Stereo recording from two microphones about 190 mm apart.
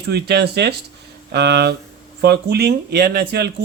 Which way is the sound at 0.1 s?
60° right (ahead or behind).